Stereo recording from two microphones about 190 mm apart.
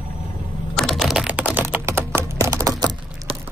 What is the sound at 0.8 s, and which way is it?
Typing, centre (ahead or behind).